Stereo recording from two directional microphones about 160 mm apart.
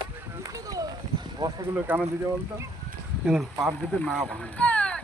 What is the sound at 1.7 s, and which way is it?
Speech, 10° right (ahead or behind).